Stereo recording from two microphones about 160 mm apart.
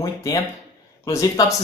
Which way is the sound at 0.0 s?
25° left (ahead or behind).